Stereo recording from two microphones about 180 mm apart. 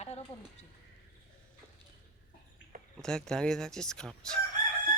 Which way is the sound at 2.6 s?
90° left.